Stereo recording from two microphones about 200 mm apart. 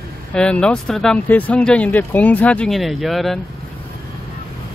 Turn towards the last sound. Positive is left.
turn(degrees=0)  # may be behind; listen again after turning